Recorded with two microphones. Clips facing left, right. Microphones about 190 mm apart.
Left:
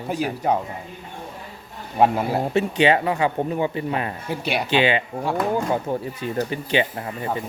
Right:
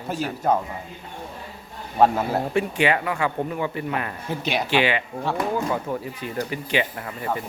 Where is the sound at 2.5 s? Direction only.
25° left (ahead or behind).